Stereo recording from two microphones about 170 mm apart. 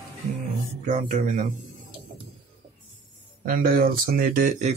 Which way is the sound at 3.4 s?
55° right (ahead or behind).